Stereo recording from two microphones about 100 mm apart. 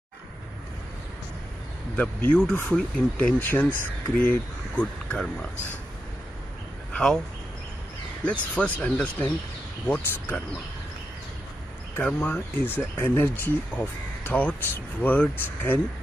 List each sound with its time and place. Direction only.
2.0 s speech: 15° left (ahead or behind)
5.1 s speech: 5° left (ahead or behind)
6.9 s a sound: 5° left (ahead or behind)
8.2 s speech: 10° left (ahead or behind)
12.0 s speech: 15° left (ahead or behind)